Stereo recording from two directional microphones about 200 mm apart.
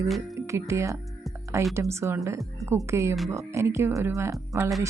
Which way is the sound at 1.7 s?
15° right (ahead or behind).